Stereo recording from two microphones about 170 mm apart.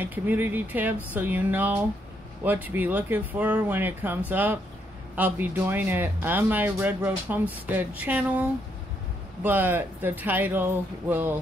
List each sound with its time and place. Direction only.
0.0 s speech: 10° right (ahead or behind)